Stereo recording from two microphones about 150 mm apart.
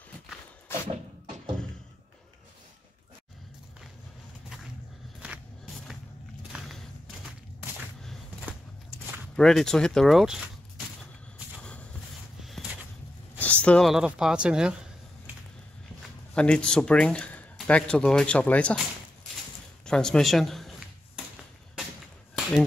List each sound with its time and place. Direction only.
0.7 s thump: 15° left (ahead or behind)
6.5 s a sound: 10° right (ahead or behind)
9.4 s speech: 5° left (ahead or behind)
13.4 s speech: 10° left (ahead or behind)
16.3 s speech: 5° left (ahead or behind)
19.9 s speech: 5° left (ahead or behind)
22.3 s a sound: 5° left (ahead or behind)